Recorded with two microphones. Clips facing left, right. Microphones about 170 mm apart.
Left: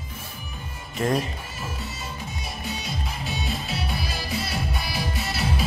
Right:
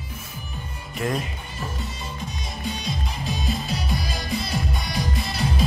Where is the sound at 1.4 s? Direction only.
5° left (ahead or behind).